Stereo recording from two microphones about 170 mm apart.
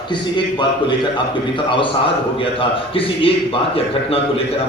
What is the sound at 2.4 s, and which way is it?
A man's voice, 30° left (ahead or behind).